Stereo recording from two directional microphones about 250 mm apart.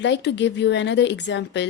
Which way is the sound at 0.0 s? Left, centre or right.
Left.